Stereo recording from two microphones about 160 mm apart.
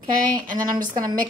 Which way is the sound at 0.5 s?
25° right (ahead or behind).